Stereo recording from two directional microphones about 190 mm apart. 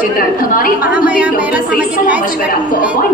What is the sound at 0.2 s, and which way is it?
Speech, 50° left (ahead or behind).